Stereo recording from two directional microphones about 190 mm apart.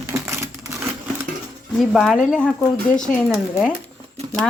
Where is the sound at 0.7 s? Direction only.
10° right (ahead or behind).